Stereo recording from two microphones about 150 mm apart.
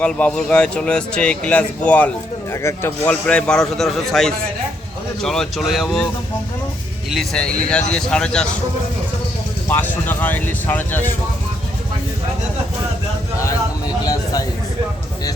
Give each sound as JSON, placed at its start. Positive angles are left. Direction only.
{"t": 0.0, "sound": "a man's voice", "side_deg": 5}
{"t": 7.1, "sound": "a man's voice", "side_deg": 5}
{"t": 9.6, "sound": "speech", "side_deg": 15}
{"t": 14.0, "sound": "a sound", "side_deg": 25}